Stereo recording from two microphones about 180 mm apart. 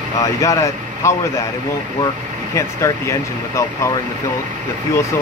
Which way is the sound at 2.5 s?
15° left (ahead or behind).